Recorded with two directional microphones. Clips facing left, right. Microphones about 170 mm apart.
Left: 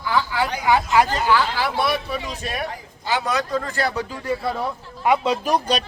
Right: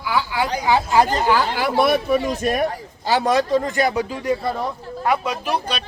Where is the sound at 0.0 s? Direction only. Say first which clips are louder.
Even; 10° right (ahead or behind).